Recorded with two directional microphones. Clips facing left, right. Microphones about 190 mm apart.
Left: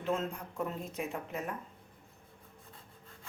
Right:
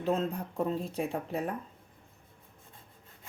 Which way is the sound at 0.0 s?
35° right (ahead or behind).